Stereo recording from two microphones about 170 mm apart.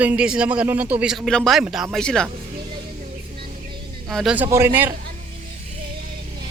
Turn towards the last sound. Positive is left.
turn(degrees=-10)  # may be behind; listen again after turning